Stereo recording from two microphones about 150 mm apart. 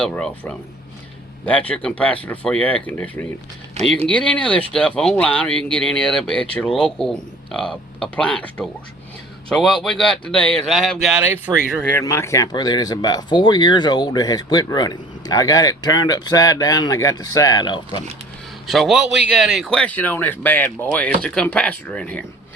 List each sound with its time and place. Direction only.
0.0 s speech: 5° left (ahead or behind)
3.8 s speech: 45° right (ahead or behind)
4.1 s speech: 10° left (ahead or behind)
11.2 s speech: 15° right (ahead or behind)
11.8 s speech: 15° left (ahead or behind); by 18.0 s 30° left (ahead or behind)
18.7 s speech: centre (ahead or behind)
19.8 s speech: 10° left (ahead or behind)